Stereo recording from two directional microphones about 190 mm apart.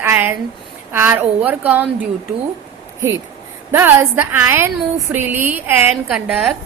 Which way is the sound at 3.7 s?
10° right (ahead or behind).